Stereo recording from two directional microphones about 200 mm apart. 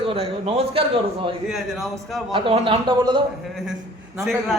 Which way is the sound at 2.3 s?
25° right (ahead or behind).